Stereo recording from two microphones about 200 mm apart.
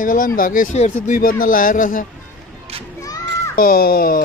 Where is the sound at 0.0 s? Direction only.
45° left (ahead or behind).